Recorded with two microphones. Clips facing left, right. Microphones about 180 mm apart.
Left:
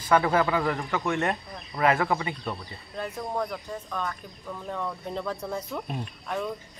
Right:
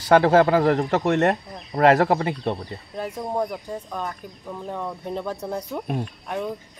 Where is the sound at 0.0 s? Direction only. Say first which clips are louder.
Right 7 dB; 80° right.